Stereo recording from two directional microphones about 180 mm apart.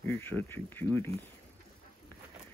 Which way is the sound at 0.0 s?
10° left (ahead or behind).